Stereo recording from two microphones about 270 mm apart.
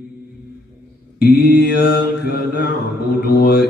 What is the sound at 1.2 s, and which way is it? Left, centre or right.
Mantra, left.